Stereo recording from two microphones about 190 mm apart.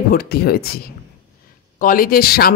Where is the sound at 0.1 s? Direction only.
50° left (ahead or behind).